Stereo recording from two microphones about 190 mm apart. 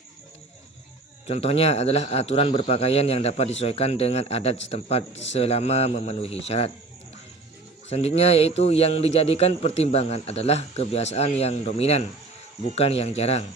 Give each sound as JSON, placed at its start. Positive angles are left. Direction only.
{"t": 1.3, "sound": "a man's voice", "side_deg": 30}
{"t": 7.9, "sound": "a man's voice", "side_deg": 35}